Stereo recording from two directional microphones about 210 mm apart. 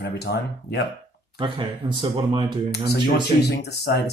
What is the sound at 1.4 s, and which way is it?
Speech, 25° right (ahead or behind).